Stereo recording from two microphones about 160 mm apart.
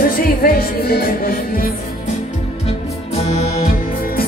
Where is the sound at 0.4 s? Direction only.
70° left (ahead or behind).